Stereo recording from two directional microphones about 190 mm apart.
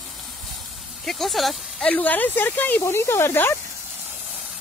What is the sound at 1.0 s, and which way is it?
Speech, centre (ahead or behind).